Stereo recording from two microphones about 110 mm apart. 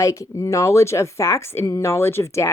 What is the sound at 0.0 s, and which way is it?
Speech, 30° left (ahead or behind).